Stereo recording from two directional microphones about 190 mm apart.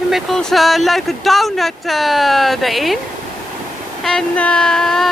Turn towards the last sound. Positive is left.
turn(degrees=0)  # may be behind; listen again after turning